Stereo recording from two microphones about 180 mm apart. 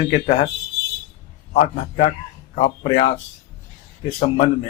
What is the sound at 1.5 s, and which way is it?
Speech, 35° left (ahead or behind).